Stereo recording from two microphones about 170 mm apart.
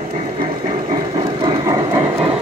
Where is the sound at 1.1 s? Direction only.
30° right (ahead or behind).